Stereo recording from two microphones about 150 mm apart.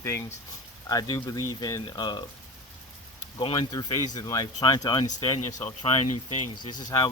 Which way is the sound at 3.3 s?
30° left (ahead or behind).